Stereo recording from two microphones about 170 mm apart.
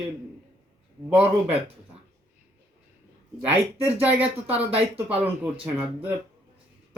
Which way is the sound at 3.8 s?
10° right (ahead or behind).